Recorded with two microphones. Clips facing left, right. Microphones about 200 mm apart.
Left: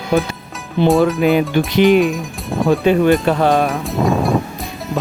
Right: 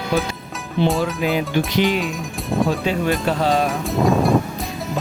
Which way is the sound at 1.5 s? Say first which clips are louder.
Left 4 dB; 55° left (ahead or behind).